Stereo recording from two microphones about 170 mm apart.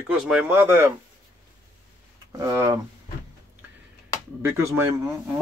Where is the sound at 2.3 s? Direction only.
20° right (ahead or behind).